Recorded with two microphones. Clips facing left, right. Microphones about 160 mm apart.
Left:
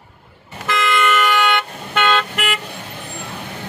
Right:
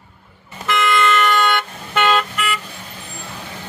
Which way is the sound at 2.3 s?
70° left (ahead or behind).